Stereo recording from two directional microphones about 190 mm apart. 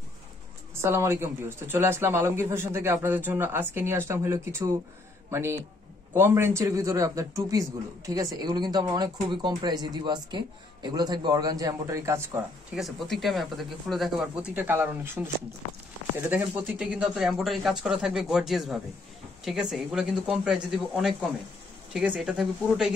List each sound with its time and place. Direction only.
0.8 s a man's voice: 15° right (ahead or behind)
12.7 s speech: centre (ahead or behind)
16.3 s speech: 10° right (ahead or behind)